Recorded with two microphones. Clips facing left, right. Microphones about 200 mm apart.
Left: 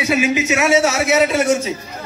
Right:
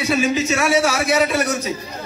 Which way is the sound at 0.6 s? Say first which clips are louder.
Left 5 dB; 25° left (ahead or behind).